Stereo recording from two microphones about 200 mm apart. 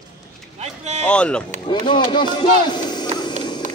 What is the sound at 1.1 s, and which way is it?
Speech, 5° left (ahead or behind).